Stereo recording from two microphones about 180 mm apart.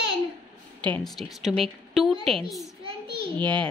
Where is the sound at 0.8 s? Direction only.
5° left (ahead or behind).